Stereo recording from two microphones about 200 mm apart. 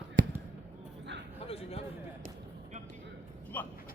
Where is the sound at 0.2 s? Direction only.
65° right (ahead or behind).